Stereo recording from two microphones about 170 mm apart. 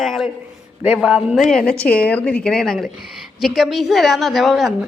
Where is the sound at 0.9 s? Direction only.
5° right (ahead or behind).